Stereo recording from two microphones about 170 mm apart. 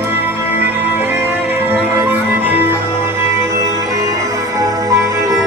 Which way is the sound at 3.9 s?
20° right (ahead or behind).